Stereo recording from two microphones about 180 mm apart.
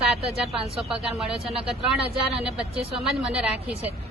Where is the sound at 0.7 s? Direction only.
Centre (ahead or behind).